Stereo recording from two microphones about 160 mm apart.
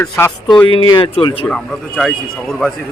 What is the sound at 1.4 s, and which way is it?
A man's voice, 5° left (ahead or behind).